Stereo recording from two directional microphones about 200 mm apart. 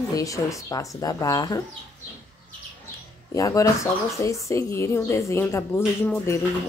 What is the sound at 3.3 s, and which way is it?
Speech, 15° left (ahead or behind).